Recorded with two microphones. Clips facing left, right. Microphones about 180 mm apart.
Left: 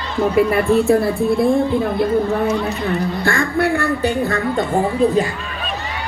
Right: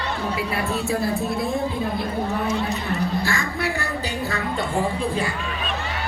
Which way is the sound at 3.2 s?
55° left (ahead or behind).